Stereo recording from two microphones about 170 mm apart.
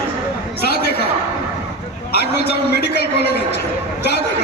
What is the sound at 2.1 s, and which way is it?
A man's voice, 70° left (ahead or behind).